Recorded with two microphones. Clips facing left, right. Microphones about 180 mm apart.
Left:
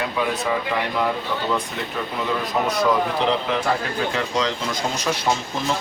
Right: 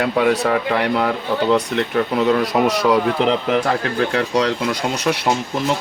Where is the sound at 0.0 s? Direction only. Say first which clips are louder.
Right 7 dB; 70° right (ahead or behind).